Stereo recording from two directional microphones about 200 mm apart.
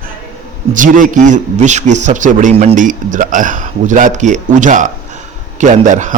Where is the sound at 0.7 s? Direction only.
40° right (ahead or behind).